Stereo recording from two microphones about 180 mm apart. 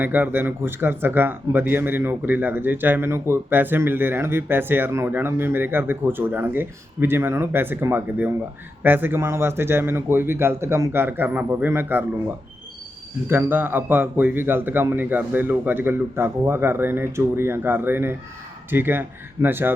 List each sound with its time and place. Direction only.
0.0 s speech: 10° right (ahead or behind)
13.2 s speech: 10° right (ahead or behind)